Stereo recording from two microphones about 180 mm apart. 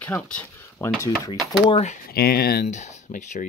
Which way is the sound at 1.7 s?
40° left (ahead or behind).